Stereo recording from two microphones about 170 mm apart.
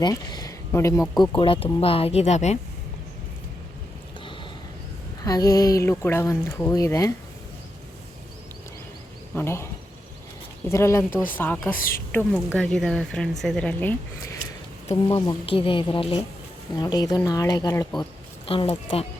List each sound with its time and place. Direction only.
0.0 s speech: 25° left (ahead or behind)
1.2 s speech: 30° left (ahead or behind)
5.2 s speech: 20° left (ahead or behind)
9.3 s speech: 15° left (ahead or behind)
10.7 s speech: 15° left (ahead or behind)
15.0 s speech: 30° left (ahead or behind)
16.7 s speech: 20° left (ahead or behind)
18.4 s speech: 35° left (ahead or behind)